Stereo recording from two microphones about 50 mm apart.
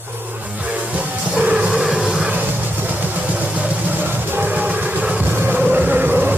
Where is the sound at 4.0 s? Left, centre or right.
Right.